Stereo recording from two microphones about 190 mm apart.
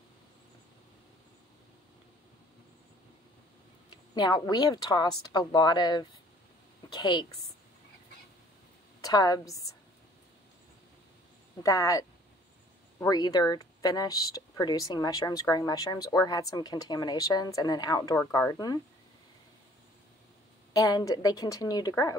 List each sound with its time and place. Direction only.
4.1 s speech: 25° left (ahead or behind)
9.0 s speech: 20° left (ahead or behind)
11.6 s speech: 15° left (ahead or behind)
20.7 s speech: 20° left (ahead or behind)